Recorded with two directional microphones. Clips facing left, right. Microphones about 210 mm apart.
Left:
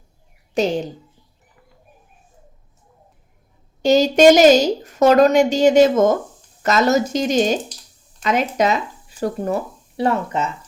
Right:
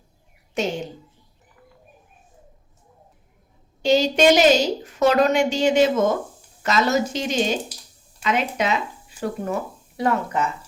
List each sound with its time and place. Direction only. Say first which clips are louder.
0.6 s a woman's voice: left 5 dB; 35° left (ahead or behind)
3.8 s a woman's voice: left 5 dB; 45° left (ahead or behind); by 10.5 s 25° left (ahead or behind)